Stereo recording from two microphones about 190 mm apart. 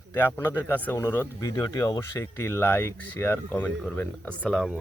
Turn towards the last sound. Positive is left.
turn(degrees=0)  # may be behind; listen again after turning